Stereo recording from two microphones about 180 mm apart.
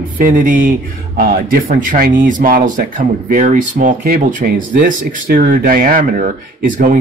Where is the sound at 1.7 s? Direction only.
50° right (ahead or behind).